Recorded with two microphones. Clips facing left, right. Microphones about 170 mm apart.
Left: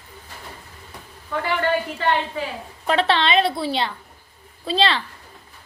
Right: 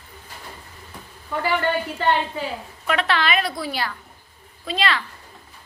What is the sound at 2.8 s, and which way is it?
A woman's voice, 30° left (ahead or behind).